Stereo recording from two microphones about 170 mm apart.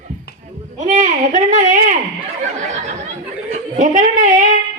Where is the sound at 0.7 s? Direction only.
50° right (ahead or behind).